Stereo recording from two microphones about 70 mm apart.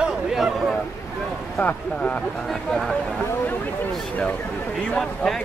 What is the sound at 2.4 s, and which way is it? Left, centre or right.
Speech, centre.